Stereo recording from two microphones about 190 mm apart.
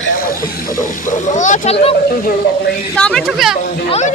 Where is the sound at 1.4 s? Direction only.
40° left (ahead or behind).